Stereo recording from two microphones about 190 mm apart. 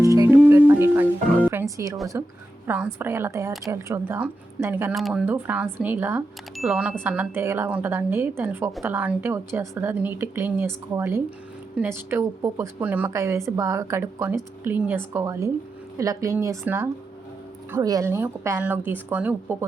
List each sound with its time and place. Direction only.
0.0 s music: 15° right (ahead or behind)
1.7 s a woman's voice: 15° right (ahead or behind)